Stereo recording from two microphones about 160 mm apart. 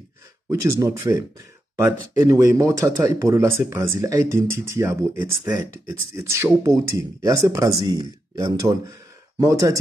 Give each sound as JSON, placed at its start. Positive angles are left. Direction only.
{"t": 0.5, "sound": "speech", "side_deg": -20}